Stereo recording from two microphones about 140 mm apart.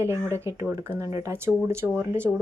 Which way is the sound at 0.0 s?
20° right (ahead or behind).